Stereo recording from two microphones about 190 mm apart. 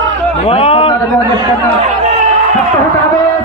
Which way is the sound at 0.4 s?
30° left (ahead or behind).